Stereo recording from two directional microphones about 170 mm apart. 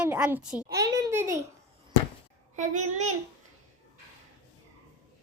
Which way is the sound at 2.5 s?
45° right (ahead or behind).